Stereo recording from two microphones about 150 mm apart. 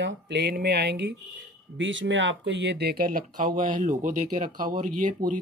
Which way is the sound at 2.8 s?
85° right.